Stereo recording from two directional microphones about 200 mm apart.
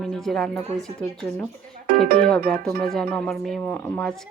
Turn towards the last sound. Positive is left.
turn(degrees=0)  # may be behind; listen again after turning